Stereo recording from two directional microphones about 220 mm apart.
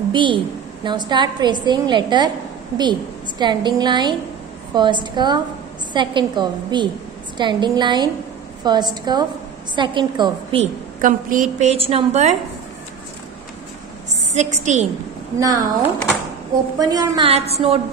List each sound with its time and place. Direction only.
0.1 s a woman's voice: 20° right (ahead or behind)
11.0 s a woman's voice: 35° right (ahead or behind)
14.3 s a woman's voice: 30° right (ahead or behind)
15.3 s a woman's voice: 15° right (ahead or behind)
16.8 s a woman's voice: 15° right (ahead or behind)
17.3 s a woman's voice: 30° right (ahead or behind)